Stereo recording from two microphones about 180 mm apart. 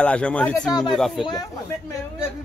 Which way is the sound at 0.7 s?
20° left (ahead or behind).